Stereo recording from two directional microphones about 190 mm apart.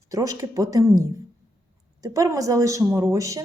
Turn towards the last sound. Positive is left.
turn(degrees=-15)  # may be behind; listen again after turning